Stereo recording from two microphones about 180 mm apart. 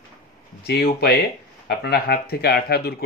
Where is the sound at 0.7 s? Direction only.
60° left (ahead or behind).